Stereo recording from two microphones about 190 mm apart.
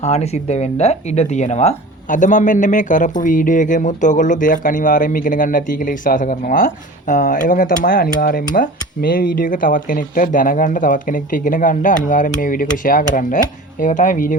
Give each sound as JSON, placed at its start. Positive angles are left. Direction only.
{"t": 0.0, "sound": "speech", "side_deg": 35}